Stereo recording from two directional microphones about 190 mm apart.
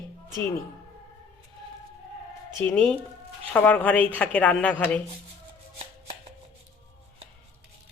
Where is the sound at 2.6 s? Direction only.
5° left (ahead or behind).